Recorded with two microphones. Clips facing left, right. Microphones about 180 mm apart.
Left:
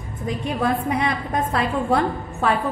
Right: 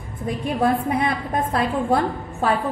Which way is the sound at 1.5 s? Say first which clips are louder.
Even; 45° right (ahead or behind).